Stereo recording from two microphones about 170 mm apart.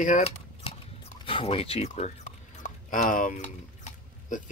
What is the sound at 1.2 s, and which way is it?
Speech, 35° left (ahead or behind).